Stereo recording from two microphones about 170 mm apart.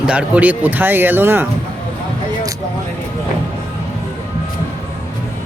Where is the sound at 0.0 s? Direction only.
5° right (ahead or behind).